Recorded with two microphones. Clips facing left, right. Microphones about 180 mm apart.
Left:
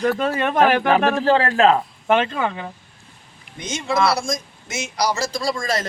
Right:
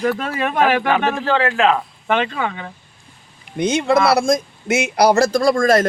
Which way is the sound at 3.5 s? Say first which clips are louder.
Right 7 dB; 60° right (ahead or behind).